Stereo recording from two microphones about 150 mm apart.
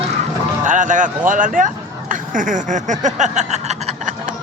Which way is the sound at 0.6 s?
60° right (ahead or behind).